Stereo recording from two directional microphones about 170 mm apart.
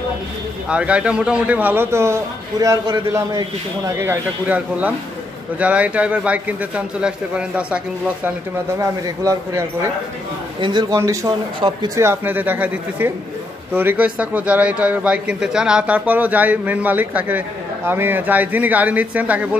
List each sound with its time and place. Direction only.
0.7 s a man's voice: 5° right (ahead or behind)
8.7 s a man's voice: 20° right (ahead or behind)